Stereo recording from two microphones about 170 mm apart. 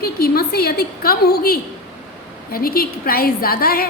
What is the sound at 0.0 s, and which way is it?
A woman's voice, 65° left (ahead or behind).